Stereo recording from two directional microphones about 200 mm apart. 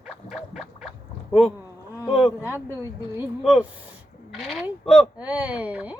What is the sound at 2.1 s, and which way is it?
A man's voice, centre (ahead or behind).